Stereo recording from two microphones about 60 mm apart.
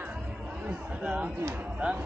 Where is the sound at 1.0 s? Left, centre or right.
Centre.